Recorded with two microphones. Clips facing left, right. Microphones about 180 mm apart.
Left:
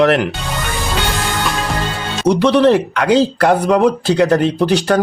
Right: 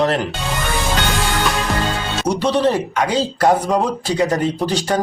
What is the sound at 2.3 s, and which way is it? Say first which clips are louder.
Speech: left 6 dB; 65° left (ahead or behind).